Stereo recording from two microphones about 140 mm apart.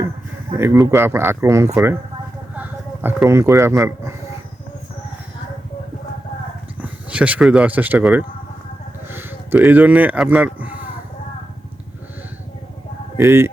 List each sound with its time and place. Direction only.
0.5 s speech: 20° right (ahead or behind)
6.8 s speech: 10° right (ahead or behind)
9.0 s a sound: 15° right (ahead or behind)
13.1 s speech: 15° right (ahead or behind)